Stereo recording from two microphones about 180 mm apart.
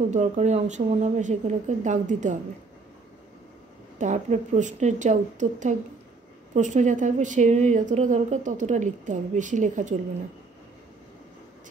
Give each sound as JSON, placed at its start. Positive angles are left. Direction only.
{"t": 0.1, "sound": "speech", "side_deg": -40}
{"t": 4.0, "sound": "a woman's voice", "side_deg": -45}